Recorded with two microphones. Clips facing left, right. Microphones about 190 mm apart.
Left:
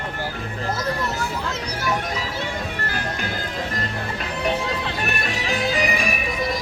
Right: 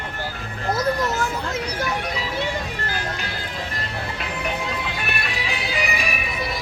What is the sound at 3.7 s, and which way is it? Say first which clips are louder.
Music: left 2 dB; 40° left (ahead or behind).